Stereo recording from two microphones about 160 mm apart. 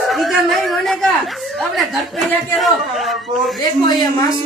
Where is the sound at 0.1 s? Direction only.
Centre (ahead or behind).